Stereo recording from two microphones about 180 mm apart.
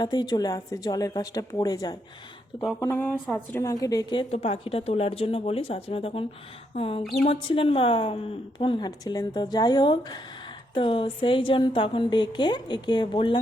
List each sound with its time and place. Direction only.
0.0 s a woman's voice: 25° left (ahead or behind)
2.8 s a woman's voice: 10° left (ahead or behind); by 13.4 s 30° left (ahead or behind)